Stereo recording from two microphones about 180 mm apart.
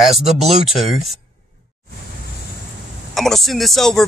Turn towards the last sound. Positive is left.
turn(degrees=0)  # may be behind; listen again after turning